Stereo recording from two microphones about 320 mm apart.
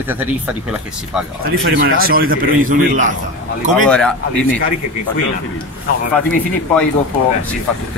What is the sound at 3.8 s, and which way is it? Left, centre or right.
Speech, centre.